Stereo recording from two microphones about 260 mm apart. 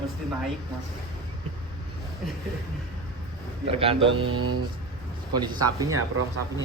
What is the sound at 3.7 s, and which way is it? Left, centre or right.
Speech, right.